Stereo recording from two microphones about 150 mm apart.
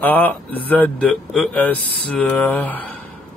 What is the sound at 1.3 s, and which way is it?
Speech, centre (ahead or behind).